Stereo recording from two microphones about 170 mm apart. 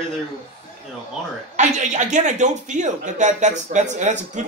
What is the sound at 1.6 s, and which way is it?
A man's voice, 45° right (ahead or behind).